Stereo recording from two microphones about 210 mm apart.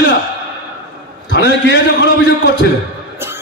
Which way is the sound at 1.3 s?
60° left (ahead or behind).